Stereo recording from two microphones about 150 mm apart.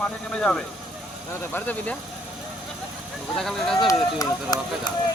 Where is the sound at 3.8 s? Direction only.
25° left (ahead or behind).